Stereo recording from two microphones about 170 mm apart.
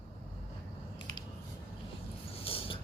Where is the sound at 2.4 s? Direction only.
35° left (ahead or behind).